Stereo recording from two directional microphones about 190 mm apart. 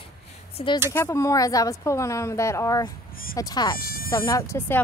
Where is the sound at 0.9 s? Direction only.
15° left (ahead or behind).